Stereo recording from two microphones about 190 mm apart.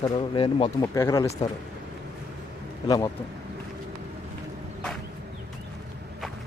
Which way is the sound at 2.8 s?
20° left (ahead or behind).